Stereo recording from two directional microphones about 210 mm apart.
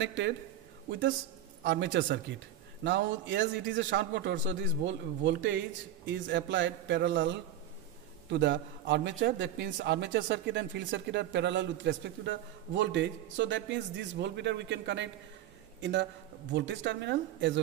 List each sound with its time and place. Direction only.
0.0 s speech: 60° right (ahead or behind)
1.6 s speech: 60° right (ahead or behind)